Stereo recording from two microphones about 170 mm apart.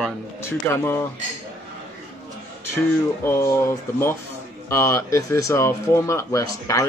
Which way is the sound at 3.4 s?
15° left (ahead or behind).